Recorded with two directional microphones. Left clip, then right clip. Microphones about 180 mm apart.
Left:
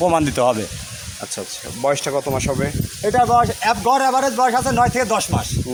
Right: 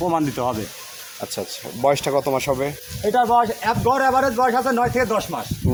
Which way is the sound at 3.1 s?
30° left (ahead or behind).